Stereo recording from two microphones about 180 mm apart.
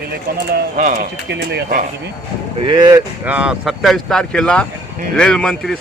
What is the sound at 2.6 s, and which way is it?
Speech, 20° right (ahead or behind).